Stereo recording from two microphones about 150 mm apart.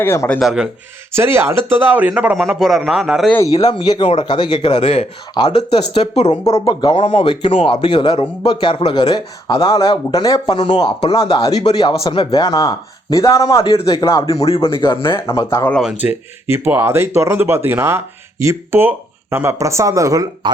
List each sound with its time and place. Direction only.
0.0 s speech: 15° left (ahead or behind)
0.3 s speech: 5° right (ahead or behind)
1.1 s speech: 15° right (ahead or behind); by 3.3 s centre (ahead or behind)
3.3 s a man's voice: 25° left (ahead or behind); by 11.7 s 40° left (ahead or behind)
11.7 s a man's voice: 30° left (ahead or behind)
13.7 s a man's voice: 35° left (ahead or behind)
14.0 s a man's voice: 20° left (ahead or behind)
14.4 s a man's voice: 40° left (ahead or behind)
15.4 s speech: 15° left (ahead or behind)
15.7 s speech: centre (ahead or behind); by 20.5 s 25° right (ahead or behind)